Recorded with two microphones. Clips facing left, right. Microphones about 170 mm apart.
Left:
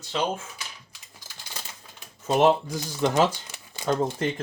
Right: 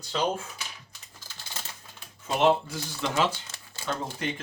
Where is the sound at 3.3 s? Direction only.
15° left (ahead or behind).